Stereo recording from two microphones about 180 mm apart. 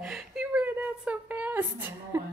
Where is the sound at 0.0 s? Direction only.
5° right (ahead or behind).